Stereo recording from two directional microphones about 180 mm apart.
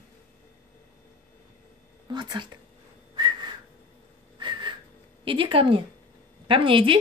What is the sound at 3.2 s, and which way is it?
Whistling, 25° right (ahead or behind).